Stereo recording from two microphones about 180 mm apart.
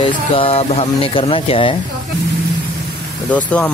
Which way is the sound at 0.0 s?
30° left (ahead or behind).